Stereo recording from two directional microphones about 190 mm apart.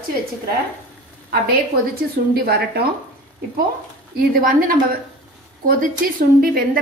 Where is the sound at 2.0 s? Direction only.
55° right (ahead or behind).